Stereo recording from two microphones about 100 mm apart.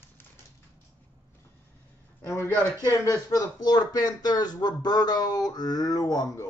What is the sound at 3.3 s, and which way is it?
Speech, 45° left (ahead or behind).